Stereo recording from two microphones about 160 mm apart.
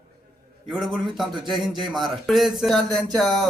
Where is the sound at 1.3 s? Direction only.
30° right (ahead or behind).